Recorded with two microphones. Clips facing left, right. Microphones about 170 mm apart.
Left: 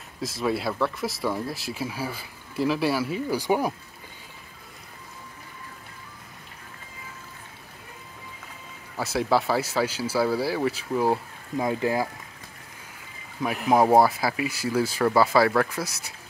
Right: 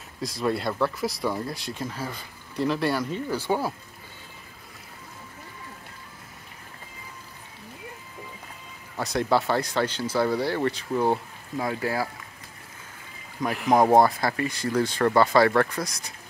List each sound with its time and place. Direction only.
0.2 s speech: centre (ahead or behind)
8.9 s speech: 5° left (ahead or behind)
11.5 s speech: 20° left (ahead or behind)
13.7 s speech: 5° left (ahead or behind)